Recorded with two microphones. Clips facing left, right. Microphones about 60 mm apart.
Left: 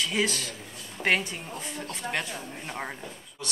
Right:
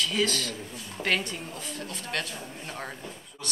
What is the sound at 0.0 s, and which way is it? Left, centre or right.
A woman's voice, centre.